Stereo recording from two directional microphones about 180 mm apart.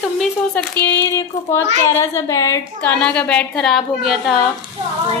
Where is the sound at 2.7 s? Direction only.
5° left (ahead or behind).